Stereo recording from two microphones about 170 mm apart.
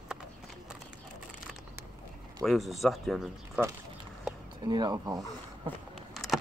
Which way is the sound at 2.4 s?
Centre (ahead or behind).